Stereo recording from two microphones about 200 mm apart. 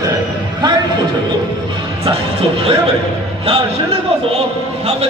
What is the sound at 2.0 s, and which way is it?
Music, 25° right (ahead or behind).